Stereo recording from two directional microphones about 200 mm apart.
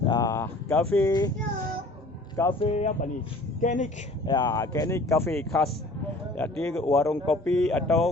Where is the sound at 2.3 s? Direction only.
15° left (ahead or behind).